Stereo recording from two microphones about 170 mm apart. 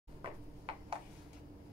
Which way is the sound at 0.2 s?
30° right (ahead or behind).